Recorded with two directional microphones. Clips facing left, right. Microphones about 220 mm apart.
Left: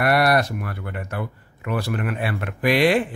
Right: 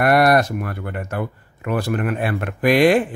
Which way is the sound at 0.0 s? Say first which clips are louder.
Right 4 dB; 45° right (ahead or behind).